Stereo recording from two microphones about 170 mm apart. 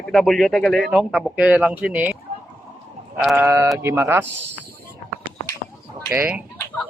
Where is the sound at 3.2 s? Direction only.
5° right (ahead or behind).